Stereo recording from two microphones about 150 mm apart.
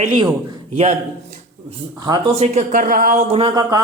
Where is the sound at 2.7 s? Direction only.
70° right (ahead or behind).